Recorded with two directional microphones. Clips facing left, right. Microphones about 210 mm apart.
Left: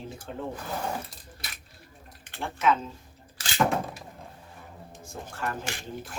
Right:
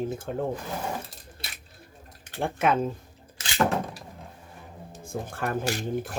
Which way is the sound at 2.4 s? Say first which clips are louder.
Right 2 dB; 55° right (ahead or behind).